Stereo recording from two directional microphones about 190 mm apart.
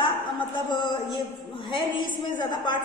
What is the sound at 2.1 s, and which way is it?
Speech, 25° left (ahead or behind).